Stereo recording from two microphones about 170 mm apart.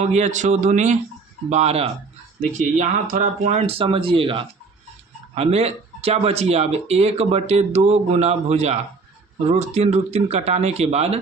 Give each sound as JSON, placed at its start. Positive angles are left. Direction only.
{"t": 0.0, "sound": "speech", "side_deg": -45}